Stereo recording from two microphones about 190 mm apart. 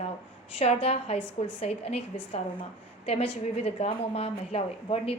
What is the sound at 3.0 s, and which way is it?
A woman's voice, 30° left (ahead or behind).